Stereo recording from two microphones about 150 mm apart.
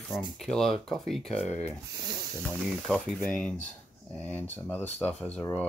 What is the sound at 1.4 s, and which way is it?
Speech, 15° right (ahead or behind).